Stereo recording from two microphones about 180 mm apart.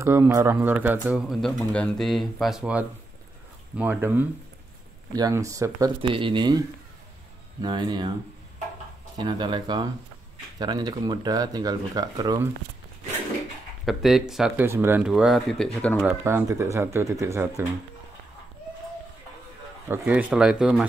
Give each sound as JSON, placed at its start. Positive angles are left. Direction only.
{"t": 0.0, "sound": "speech", "side_deg": -15}
{"t": 7.6, "sound": "speech", "side_deg": -25}
{"t": 9.2, "sound": "speech", "side_deg": -25}
{"t": 13.8, "sound": "speech", "side_deg": 0}
{"t": 16.0, "sound": "speech", "side_deg": -5}
{"t": 16.3, "sound": "speech", "side_deg": -15}
{"t": 19.9, "sound": "speech", "side_deg": -10}